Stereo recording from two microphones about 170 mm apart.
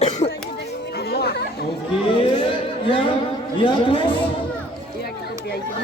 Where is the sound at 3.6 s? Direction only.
30° left (ahead or behind).